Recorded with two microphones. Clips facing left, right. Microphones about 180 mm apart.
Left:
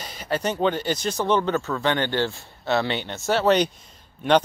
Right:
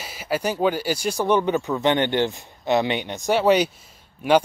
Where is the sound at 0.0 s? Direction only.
5° right (ahead or behind).